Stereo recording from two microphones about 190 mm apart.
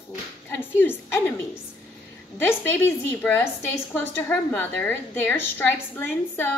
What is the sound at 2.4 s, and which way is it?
A woman's voice, 10° left (ahead or behind).